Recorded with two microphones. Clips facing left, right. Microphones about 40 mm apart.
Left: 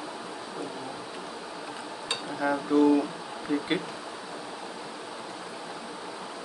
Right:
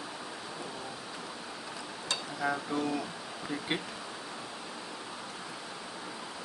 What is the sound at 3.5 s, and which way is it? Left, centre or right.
Speech, centre.